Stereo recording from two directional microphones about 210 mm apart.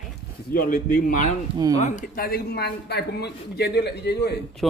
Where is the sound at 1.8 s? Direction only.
35° left (ahead or behind).